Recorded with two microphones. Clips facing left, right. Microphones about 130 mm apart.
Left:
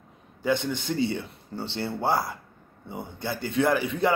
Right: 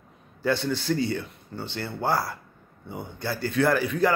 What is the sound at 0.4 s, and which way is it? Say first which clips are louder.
Speech: even; 15° left (ahead or behind).